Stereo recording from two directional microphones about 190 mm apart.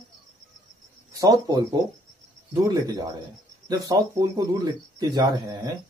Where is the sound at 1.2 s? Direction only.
20° right (ahead or behind).